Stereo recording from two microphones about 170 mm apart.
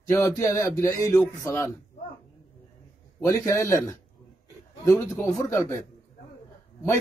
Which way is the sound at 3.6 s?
15° left (ahead or behind).